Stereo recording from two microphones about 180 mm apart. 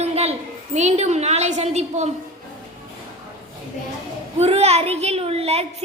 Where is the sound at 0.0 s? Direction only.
35° right (ahead or behind).